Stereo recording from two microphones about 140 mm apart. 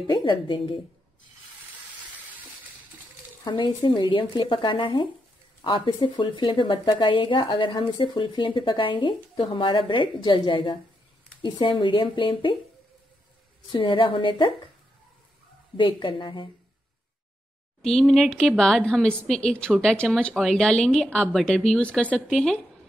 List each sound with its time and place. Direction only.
0.0 s a woman's voice: 35° left (ahead or behind)
3.4 s a woman's voice: 35° left (ahead or behind)
13.7 s a woman's voice: 35° left (ahead or behind)
15.8 s a woman's voice: 35° left (ahead or behind)
17.8 s a woman's voice: centre (ahead or behind)